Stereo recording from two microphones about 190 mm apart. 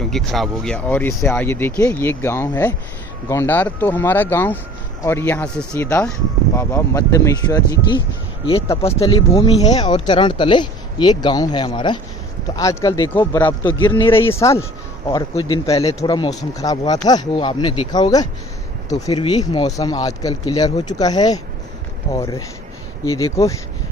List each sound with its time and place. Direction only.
0.1 s speech: centre (ahead or behind)
8.8 s speech: 30° left (ahead or behind)
9.3 s speech: 20° left (ahead or behind)
14.1 s speech: 15° left (ahead or behind)
15.0 s speech: 25° left (ahead or behind)
23.0 s speech: 15° left (ahead or behind)